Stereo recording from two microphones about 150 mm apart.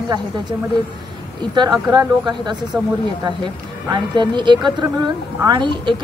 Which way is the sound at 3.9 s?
30° right (ahead or behind).